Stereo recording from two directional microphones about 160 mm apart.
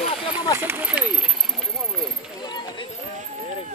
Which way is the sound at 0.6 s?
10° right (ahead or behind).